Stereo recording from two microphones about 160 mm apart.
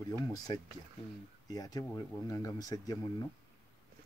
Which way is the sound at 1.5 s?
20° left (ahead or behind).